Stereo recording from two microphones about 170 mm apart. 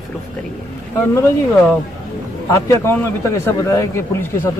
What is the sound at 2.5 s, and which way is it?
A man's voice, 20° left (ahead or behind).